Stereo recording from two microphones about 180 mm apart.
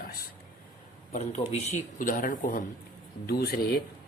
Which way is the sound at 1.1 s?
35° left (ahead or behind).